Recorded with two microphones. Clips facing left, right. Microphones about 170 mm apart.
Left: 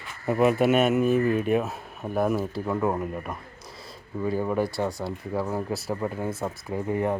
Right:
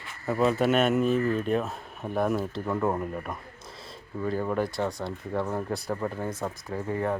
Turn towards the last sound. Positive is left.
turn(degrees=15)  # may be behind; listen again after turning